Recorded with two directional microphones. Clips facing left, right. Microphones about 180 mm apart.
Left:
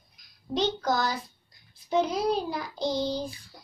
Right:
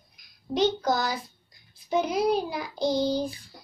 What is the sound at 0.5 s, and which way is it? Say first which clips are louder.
Child singing: right 2 dB; 10° right (ahead or behind).